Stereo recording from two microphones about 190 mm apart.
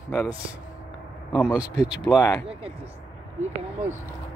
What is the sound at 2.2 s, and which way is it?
Speech, 15° left (ahead or behind).